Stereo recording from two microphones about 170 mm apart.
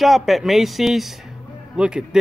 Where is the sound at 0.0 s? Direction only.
Centre (ahead or behind).